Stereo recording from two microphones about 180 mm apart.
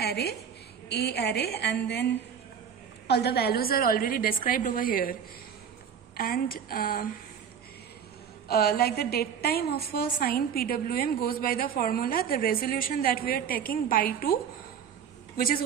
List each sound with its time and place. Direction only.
0.0 s a woman's voice: 65° left (ahead or behind)
3.1 s a woman's voice: 65° left (ahead or behind)
6.1 s a woman's voice: 55° left (ahead or behind)
8.5 s a woman's voice: 60° left (ahead or behind)